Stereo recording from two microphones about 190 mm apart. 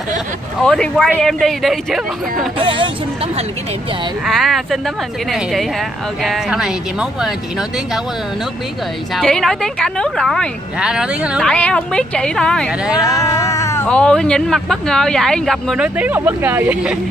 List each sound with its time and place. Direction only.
0.6 s a woman's voice: centre (ahead or behind)
2.6 s speech: 25° right (ahead or behind)
4.3 s a woman's voice: centre (ahead or behind)
9.1 s a woman's voice: centre (ahead or behind)
12.9 s speech: 15° left (ahead or behind)
13.8 s a woman's voice: 5° left (ahead or behind)